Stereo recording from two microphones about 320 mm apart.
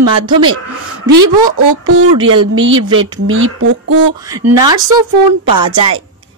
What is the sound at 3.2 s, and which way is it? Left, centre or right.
Speech, right.